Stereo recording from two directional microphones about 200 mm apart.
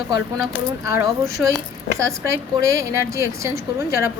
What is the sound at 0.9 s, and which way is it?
A woman's voice, 15° right (ahead or behind).